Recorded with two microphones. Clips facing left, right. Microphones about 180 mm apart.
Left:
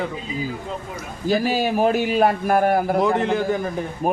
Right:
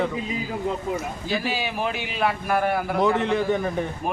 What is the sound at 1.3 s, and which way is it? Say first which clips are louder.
A man's voice: left 8 dB; 45° left (ahead or behind).